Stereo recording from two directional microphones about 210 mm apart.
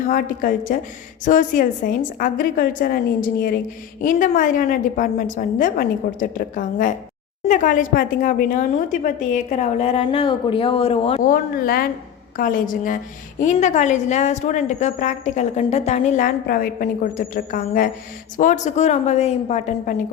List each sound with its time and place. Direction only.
0.1 s a woman's voice: 40° left (ahead or behind)
11.2 s a woman's voice: 40° left (ahead or behind)